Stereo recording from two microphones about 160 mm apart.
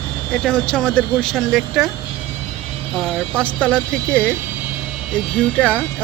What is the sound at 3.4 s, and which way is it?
Speech, 5° left (ahead or behind).